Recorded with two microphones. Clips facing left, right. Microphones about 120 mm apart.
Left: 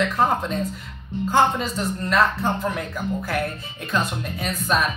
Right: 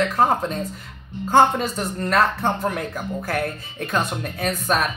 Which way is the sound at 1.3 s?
50° right (ahead or behind).